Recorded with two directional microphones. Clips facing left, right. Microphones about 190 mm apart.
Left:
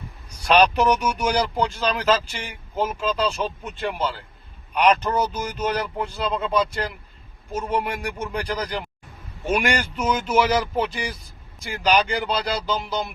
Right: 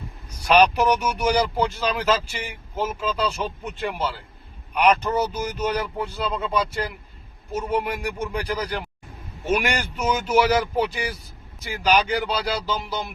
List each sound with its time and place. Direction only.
0.4 s speech: 10° right (ahead or behind)
2.7 s speech: 10° left (ahead or behind)
3.1 s speech: 10° right (ahead or behind)